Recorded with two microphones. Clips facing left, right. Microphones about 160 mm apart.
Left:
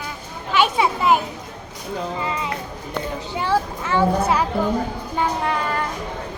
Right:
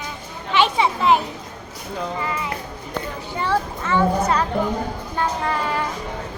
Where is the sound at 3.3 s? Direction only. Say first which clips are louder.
Left 1 dB; 5° left (ahead or behind).